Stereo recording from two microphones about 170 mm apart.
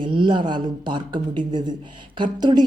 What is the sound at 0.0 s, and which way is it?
A woman's voice, 30° right (ahead or behind).